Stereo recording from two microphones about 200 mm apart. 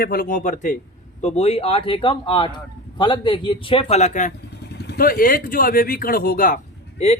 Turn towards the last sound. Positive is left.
turn(degrees=35)  # may be behind; listen again after turning